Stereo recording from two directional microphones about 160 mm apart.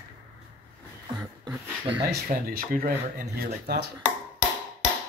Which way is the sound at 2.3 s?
65° right (ahead or behind).